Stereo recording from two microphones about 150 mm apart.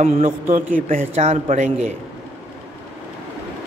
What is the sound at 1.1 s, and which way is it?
Speech, 45° right (ahead or behind).